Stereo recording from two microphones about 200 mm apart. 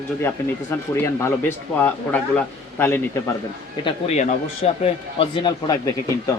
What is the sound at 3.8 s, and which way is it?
A man's voice, 35° left (ahead or behind).